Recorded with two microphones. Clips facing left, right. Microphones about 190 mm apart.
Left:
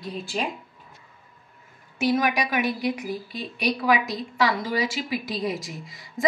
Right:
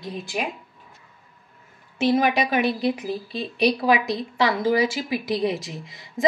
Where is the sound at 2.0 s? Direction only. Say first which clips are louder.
Right 3 dB; 25° right (ahead or behind).